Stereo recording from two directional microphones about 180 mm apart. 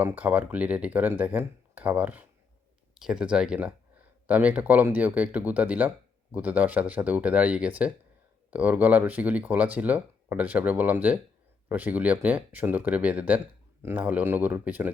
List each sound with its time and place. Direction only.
0.0 s speech: 10° right (ahead or behind)